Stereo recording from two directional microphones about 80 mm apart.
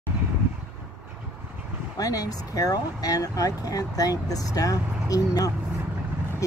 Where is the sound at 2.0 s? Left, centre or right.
Left.